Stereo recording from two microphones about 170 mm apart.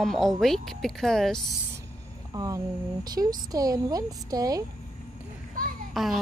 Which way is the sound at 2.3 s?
20° right (ahead or behind).